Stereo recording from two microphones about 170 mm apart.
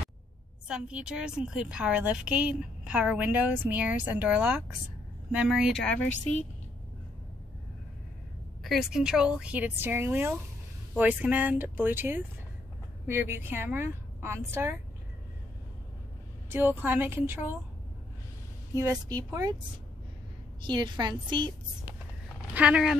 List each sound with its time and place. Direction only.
0.7 s a woman's voice: 5° right (ahead or behind)
8.6 s a woman's voice: 5° right (ahead or behind)
16.4 s a woman's voice: 10° right (ahead or behind)
18.8 s a woman's voice: 20° right (ahead or behind)
20.6 s a woman's voice: 25° right (ahead or behind)
22.5 s speech: 5° right (ahead or behind)